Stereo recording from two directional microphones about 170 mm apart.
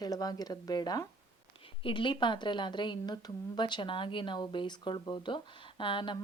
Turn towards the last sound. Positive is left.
turn(degrees=30)  # may be behind; listen again after turning